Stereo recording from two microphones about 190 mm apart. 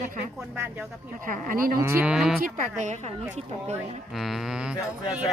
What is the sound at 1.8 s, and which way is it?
Moo, 10° right (ahead or behind).